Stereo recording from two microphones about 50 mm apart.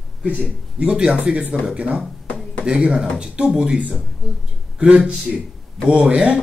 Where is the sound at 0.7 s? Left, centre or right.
Centre.